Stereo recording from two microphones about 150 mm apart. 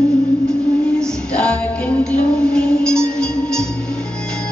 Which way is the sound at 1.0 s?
5° left (ahead or behind).